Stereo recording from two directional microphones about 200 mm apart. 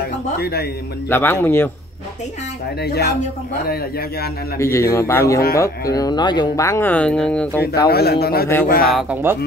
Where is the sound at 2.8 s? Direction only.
55° left (ahead or behind).